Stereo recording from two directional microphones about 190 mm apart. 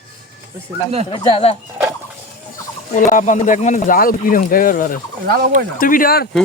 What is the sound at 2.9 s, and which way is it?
Speech, 40° left (ahead or behind).